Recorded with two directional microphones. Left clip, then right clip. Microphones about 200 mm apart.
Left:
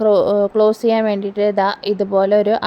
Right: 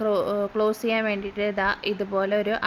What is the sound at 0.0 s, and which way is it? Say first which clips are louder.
Speech: left 10 dB; 20° left (ahead or behind).